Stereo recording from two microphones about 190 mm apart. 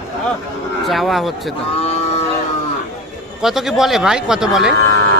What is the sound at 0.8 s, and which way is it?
Speech, centre (ahead or behind).